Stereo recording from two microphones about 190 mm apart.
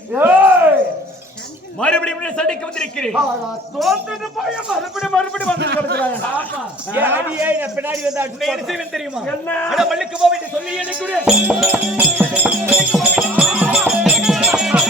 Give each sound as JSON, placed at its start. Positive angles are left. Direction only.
{"t": 0.1, "sound": "a sound", "side_deg": -10}
{"t": 1.8, "sound": "a man's voice", "side_deg": 5}
{"t": 5.5, "sound": "a man's voice", "side_deg": -60}
{"t": 6.9, "sound": "a man's voice", "side_deg": -10}
{"t": 11.3, "sound": "music", "side_deg": -5}